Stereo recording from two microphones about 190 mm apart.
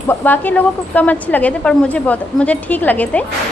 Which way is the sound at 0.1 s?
10° left (ahead or behind).